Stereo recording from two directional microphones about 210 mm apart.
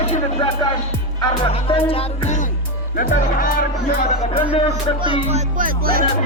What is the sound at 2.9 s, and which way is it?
Speech, 40° left (ahead or behind).